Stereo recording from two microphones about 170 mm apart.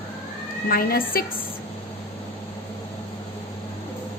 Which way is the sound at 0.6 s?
60° left (ahead or behind).